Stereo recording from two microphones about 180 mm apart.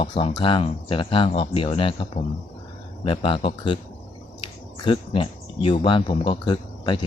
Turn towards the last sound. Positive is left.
turn(degrees=25)  # may be behind; listen again after turning